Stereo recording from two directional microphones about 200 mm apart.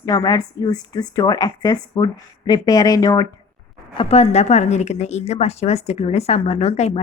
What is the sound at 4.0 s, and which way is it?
A woman's voice, 30° left (ahead or behind).